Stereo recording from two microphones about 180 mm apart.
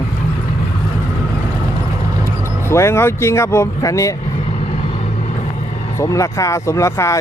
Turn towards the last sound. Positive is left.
turn(degrees=15)  # may be behind; listen again after turning